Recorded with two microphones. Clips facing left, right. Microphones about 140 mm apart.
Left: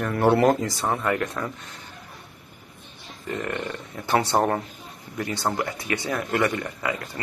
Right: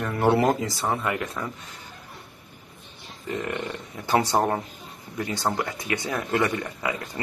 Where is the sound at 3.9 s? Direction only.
15° right (ahead or behind).